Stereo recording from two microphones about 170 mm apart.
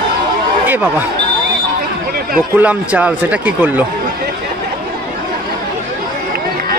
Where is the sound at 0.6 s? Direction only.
10° right (ahead or behind).